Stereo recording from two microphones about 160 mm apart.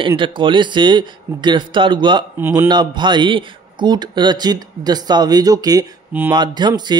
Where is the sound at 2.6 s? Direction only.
25° right (ahead or behind).